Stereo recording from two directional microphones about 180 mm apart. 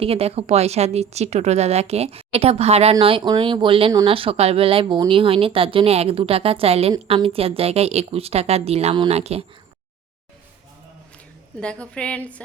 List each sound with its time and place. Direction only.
0.0 s a woman's voice: 35° right (ahead or behind)
11.5 s a woman's voice: 5° left (ahead or behind)